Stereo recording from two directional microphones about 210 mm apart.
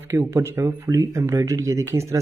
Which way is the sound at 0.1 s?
10° right (ahead or behind).